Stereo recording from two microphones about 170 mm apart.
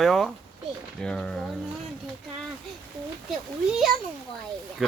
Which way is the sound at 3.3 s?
Centre (ahead or behind).